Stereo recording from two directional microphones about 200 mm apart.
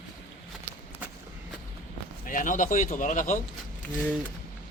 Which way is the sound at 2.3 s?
40° left (ahead or behind).